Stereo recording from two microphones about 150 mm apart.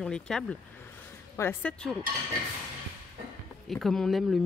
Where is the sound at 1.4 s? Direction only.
15° left (ahead or behind).